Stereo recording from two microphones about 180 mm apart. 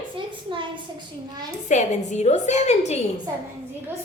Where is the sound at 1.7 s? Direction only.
40° left (ahead or behind).